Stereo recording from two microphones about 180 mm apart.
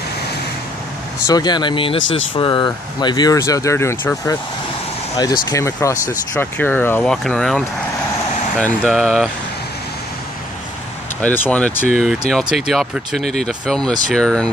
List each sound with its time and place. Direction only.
1.2 s speech: 20° left (ahead or behind)
2.0 s speech: 90° left
2.3 s speech: 25° left (ahead or behind)
5.5 s speech: 20° left (ahead or behind); by 9.3 s centre (ahead or behind)
11.1 s speech: 10° left (ahead or behind)